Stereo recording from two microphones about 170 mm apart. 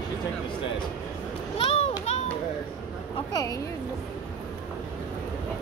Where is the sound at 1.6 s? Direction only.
40° left (ahead or behind).